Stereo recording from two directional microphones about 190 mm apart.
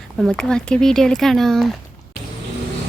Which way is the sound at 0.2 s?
5° left (ahead or behind).